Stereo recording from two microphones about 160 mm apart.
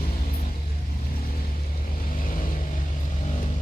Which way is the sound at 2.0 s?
60° left (ahead or behind).